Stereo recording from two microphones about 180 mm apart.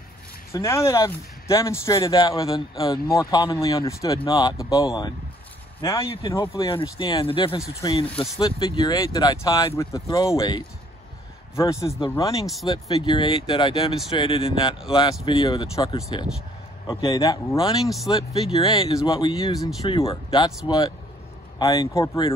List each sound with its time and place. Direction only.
0.5 s speech: 15° left (ahead or behind)
17.8 s speech: centre (ahead or behind)
18.1 s speech: 25° left (ahead or behind)
19.8 s speech: 30° left (ahead or behind)